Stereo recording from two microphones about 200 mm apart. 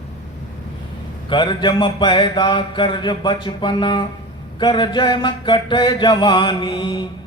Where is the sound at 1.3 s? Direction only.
25° left (ahead or behind).